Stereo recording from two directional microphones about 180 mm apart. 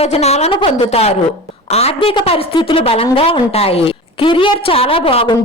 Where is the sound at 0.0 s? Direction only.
35° left (ahead or behind).